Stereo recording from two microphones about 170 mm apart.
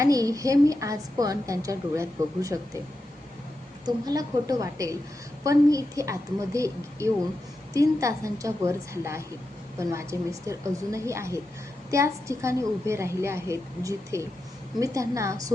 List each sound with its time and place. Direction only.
0.0 s a woman's voice: 20° right (ahead or behind)
3.8 s a woman's voice: 20° right (ahead or behind)